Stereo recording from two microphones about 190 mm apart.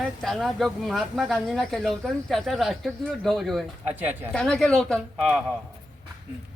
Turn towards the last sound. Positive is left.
turn(degrees=5)  # may be behind; listen again after turning